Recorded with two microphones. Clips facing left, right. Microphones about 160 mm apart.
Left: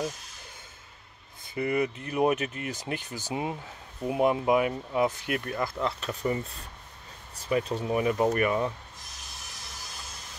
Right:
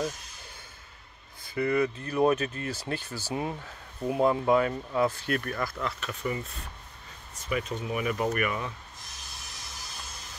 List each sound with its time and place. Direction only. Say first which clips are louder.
1.4 s speech: right 1 dB; 20° left (ahead or behind)